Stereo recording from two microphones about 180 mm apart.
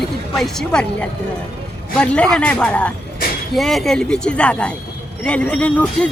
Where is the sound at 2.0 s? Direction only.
5° left (ahead or behind).